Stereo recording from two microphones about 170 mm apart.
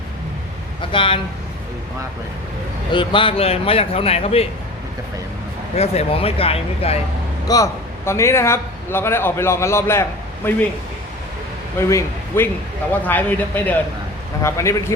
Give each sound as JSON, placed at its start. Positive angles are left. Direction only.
{"t": 0.8, "sound": "speech", "side_deg": 30}
{"t": 2.9, "sound": "a man's voice", "side_deg": 30}
{"t": 5.7, "sound": "a man's voice", "side_deg": 35}
{"t": 7.4, "sound": "a man's voice", "side_deg": 20}
{"t": 11.8, "sound": "a man's voice", "side_deg": 15}